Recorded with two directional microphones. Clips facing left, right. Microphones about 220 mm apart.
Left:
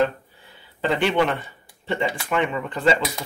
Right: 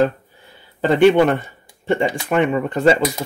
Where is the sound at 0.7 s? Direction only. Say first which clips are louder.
Right 8 dB; 45° right (ahead or behind).